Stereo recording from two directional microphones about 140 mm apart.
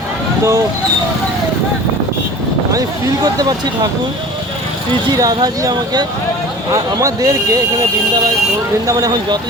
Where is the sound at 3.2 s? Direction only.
30° right (ahead or behind).